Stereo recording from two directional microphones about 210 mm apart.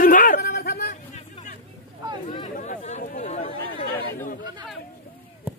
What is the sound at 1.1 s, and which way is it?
Hubbub, 40° left (ahead or behind).